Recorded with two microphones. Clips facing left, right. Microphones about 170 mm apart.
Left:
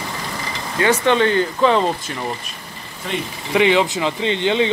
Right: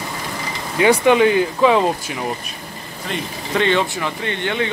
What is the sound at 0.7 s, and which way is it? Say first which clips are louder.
Speech: right 3 dB; 15° right (ahead or behind).